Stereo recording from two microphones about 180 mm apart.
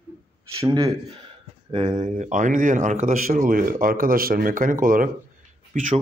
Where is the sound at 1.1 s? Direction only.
30° right (ahead or behind); by 6.0 s 45° right (ahead or behind).